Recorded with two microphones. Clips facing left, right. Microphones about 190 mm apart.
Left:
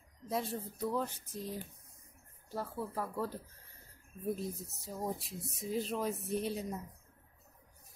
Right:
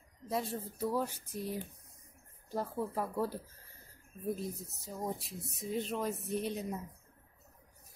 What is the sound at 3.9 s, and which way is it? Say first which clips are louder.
A woman's voice: even; centre (ahead or behind).